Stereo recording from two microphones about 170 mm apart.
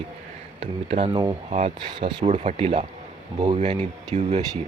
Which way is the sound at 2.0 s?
30° right (ahead or behind).